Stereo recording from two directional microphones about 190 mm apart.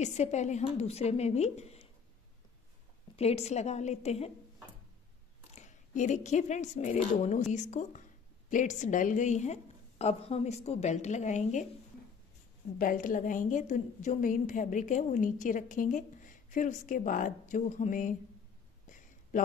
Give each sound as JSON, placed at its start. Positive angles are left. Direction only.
{"t": 0.0, "sound": "a woman's voice", "side_deg": 35}
{"t": 3.2, "sound": "a woman's voice", "side_deg": 35}
{"t": 5.5, "sound": "a woman's voice", "side_deg": 40}
{"t": 12.7, "sound": "a woman's voice", "side_deg": 45}
{"t": 18.9, "sound": "a sound", "side_deg": 45}